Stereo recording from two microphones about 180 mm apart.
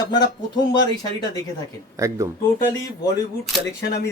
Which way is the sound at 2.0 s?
15° right (ahead or behind).